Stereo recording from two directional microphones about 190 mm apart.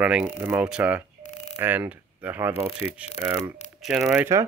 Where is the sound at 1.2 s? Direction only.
35° left (ahead or behind).